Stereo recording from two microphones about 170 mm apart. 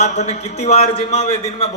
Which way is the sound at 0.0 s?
40° left (ahead or behind).